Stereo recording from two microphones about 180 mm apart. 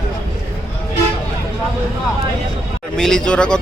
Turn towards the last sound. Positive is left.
turn(degrees=5)  # may be behind; listen again after turning